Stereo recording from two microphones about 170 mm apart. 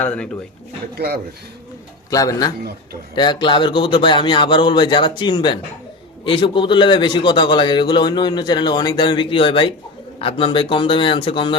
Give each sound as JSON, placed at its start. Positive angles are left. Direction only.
{"t": 0.0, "sound": "speech", "side_deg": 5}
{"t": 0.9, "sound": "speech", "side_deg": -70}
{"t": 2.0, "sound": "a man's voice", "side_deg": 20}